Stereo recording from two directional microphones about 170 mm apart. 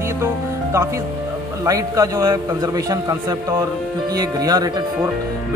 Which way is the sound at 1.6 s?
20° right (ahead or behind).